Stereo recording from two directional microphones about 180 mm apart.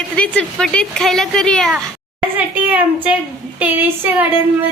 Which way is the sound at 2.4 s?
10° right (ahead or behind).